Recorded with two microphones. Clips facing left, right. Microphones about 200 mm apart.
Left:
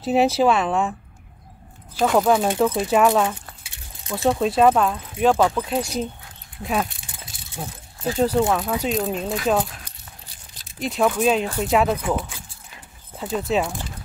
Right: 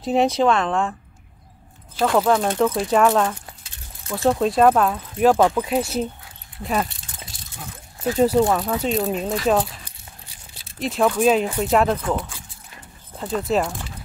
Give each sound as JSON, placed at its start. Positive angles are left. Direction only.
{"t": 0.0, "sound": "speech", "side_deg": 5}
{"t": 2.0, "sound": "speech", "side_deg": 5}
{"t": 2.9, "sound": "keys jangling", "side_deg": 10}
{"t": 4.2, "sound": "speech", "side_deg": 0}
{"t": 6.6, "sound": "keys jangling", "side_deg": 0}
{"t": 7.6, "sound": "speech", "side_deg": 30}
{"t": 8.4, "sound": "speech", "side_deg": 0}
{"t": 12.0, "sound": "speech", "side_deg": 10}